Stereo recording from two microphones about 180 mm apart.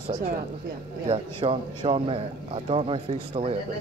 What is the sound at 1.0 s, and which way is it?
A man's voice, 30° right (ahead or behind).